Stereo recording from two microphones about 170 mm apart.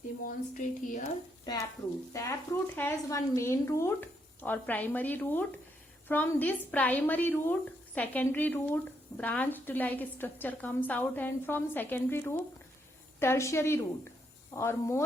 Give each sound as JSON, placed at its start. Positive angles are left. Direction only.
{"t": 0.3, "sound": "a woman's voice", "side_deg": 50}
{"t": 2.1, "sound": "a woman's voice", "side_deg": 15}